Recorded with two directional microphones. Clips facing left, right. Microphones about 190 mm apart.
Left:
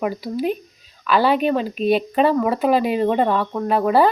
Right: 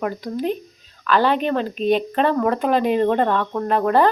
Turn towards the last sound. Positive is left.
turn(degrees=5)  # may be behind; listen again after turning